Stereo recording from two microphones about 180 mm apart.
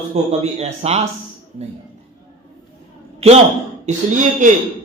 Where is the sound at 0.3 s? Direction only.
35° right (ahead or behind).